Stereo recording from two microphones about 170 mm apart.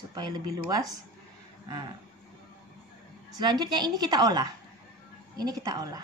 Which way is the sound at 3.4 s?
25° right (ahead or behind).